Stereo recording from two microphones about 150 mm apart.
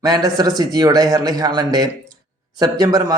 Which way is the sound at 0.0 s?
25° right (ahead or behind).